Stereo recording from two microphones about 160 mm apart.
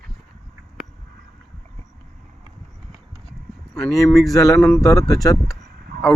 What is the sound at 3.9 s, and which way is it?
Speech, 20° left (ahead or behind).